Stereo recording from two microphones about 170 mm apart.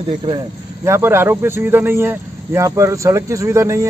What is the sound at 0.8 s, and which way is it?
Speech, 15° right (ahead or behind).